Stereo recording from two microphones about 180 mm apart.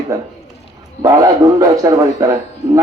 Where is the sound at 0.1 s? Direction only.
15° right (ahead or behind).